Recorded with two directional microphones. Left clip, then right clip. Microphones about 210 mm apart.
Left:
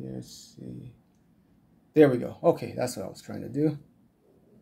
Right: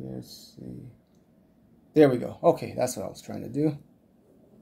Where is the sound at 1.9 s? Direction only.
Centre (ahead or behind).